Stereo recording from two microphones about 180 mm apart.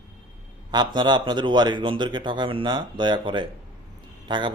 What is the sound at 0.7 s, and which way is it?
Speech, 25° right (ahead or behind).